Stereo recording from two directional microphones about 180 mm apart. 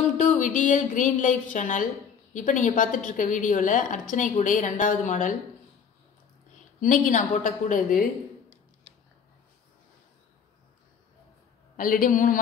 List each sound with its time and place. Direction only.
0.2 s a woman's voice: 45° left (ahead or behind)
6.8 s a woman's voice: 45° left (ahead or behind)
11.7 s a woman's voice: 50° left (ahead or behind)